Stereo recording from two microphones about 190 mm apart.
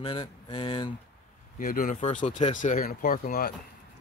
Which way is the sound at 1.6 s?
45° left (ahead or behind).